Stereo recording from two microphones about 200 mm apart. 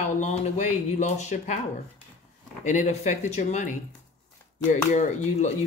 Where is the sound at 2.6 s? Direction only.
35° left (ahead or behind).